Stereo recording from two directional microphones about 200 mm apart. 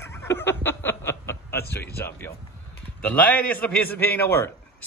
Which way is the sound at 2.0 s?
10° left (ahead or behind).